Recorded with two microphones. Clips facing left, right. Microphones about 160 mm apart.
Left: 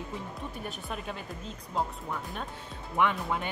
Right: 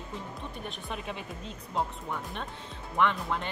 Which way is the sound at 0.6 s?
Centre (ahead or behind).